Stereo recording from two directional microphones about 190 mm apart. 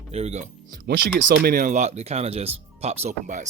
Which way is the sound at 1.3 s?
50° right (ahead or behind).